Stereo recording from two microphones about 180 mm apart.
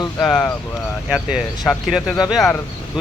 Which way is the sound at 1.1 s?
5° right (ahead or behind).